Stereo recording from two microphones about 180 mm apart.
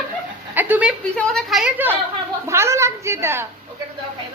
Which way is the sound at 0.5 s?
10° right (ahead or behind).